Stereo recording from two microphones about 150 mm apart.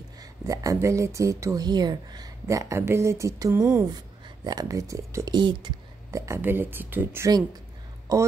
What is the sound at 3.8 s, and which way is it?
Speech, 30° right (ahead or behind).